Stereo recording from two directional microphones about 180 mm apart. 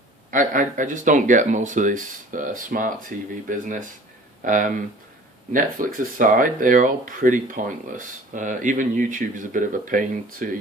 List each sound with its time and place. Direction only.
0.3 s speech: 45° right (ahead or behind)